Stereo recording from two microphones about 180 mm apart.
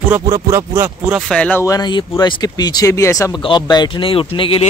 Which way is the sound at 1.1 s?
5° right (ahead or behind).